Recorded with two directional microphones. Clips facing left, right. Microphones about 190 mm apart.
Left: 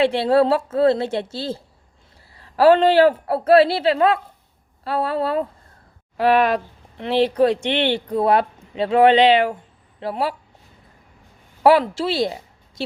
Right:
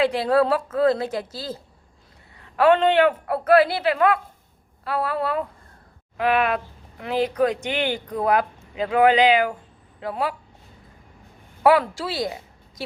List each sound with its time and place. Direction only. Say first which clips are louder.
0.0 s a woman's voice: left 3 dB; 30° left (ahead or behind)
11.6 s speech: left 3 dB; 25° left (ahead or behind)